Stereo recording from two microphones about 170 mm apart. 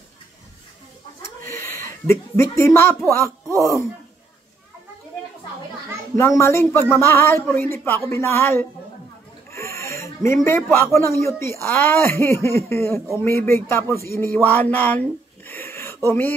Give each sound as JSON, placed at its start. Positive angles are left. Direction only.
{"t": 1.2, "sound": "a sound", "side_deg": 15}
{"t": 3.1, "sound": "speech", "side_deg": 15}
{"t": 6.1, "sound": "speech", "side_deg": 15}